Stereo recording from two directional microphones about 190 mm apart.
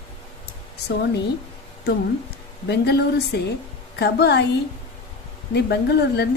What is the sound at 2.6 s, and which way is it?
Speech, 60° left (ahead or behind).